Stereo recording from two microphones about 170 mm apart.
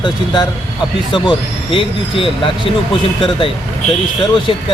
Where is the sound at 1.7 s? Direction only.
30° left (ahead or behind).